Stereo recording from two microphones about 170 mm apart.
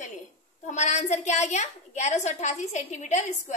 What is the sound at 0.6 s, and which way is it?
A woman's voice, 45° left (ahead or behind).